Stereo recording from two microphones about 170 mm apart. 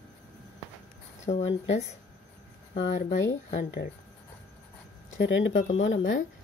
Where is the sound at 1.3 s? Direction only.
35° left (ahead or behind).